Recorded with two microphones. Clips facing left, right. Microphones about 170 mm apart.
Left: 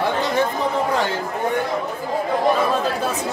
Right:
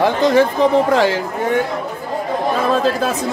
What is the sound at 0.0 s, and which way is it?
Chatter, 90° right.